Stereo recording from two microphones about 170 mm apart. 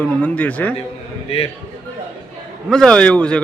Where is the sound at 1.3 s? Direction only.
35° left (ahead or behind).